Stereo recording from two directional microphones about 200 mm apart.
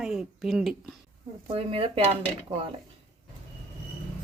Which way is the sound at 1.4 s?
30° right (ahead or behind).